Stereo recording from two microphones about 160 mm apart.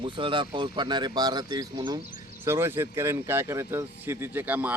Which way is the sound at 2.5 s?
15° right (ahead or behind).